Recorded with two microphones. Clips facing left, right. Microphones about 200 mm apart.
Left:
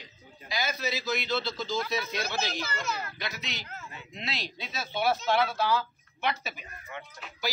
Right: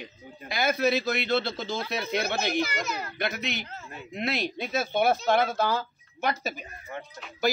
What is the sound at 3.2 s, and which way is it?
A man's voice, 55° right (ahead or behind).